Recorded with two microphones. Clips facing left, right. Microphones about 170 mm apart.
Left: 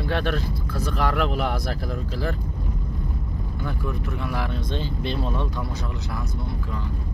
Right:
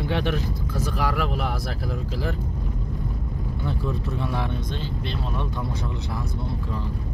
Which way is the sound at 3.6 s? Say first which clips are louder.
Right 2 dB; 25° right (ahead or behind).